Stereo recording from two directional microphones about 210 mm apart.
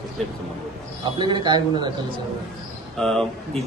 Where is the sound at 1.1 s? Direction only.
20° right (ahead or behind).